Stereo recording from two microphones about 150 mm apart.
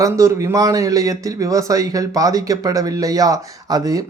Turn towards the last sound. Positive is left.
turn(degrees=-25)  # may be behind; listen again after turning